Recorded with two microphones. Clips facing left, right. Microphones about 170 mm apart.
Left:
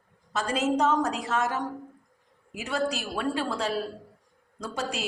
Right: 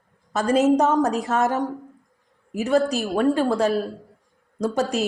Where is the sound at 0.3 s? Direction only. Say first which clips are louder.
Right 8 dB; 45° right (ahead or behind).